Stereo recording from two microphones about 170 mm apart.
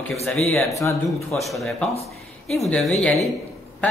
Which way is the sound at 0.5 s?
15° left (ahead or behind).